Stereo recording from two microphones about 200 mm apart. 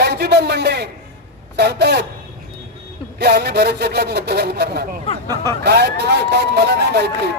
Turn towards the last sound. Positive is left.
turn(degrees=-55)  # may be behind; listen again after turning